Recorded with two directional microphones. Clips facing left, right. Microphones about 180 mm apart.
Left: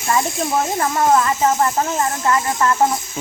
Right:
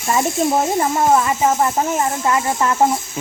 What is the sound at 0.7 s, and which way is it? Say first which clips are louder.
Speech: right 1 dB; 10° right (ahead or behind).